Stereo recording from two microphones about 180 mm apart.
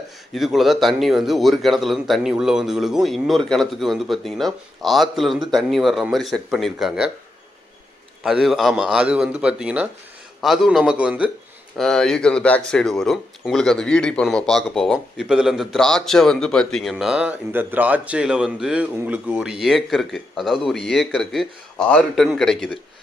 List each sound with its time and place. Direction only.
0.3 s speech: centre (ahead or behind)
8.2 s speech: centre (ahead or behind)